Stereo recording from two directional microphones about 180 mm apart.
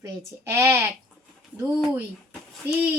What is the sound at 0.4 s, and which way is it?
Speech, 15° right (ahead or behind).